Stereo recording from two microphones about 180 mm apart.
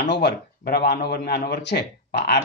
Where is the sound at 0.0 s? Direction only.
70° left (ahead or behind).